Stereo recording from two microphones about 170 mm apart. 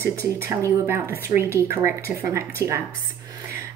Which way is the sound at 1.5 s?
15° right (ahead or behind).